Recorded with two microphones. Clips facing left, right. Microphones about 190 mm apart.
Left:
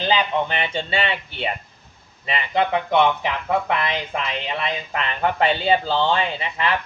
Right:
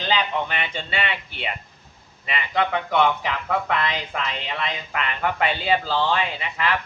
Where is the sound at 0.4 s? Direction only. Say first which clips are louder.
Left 4 dB; 30° left (ahead or behind).